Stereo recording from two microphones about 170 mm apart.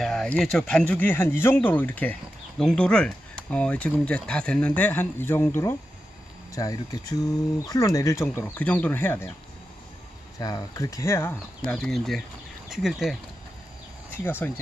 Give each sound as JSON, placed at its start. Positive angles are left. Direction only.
{"t": 0.0, "sound": "speech", "side_deg": 5}
{"t": 10.4, "sound": "speech", "side_deg": 20}
{"t": 14.1, "sound": "speech", "side_deg": 10}